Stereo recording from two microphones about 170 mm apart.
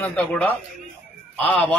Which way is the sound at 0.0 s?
5° left (ahead or behind).